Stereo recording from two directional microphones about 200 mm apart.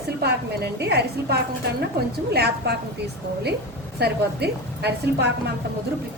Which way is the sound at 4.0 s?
55° right (ahead or behind).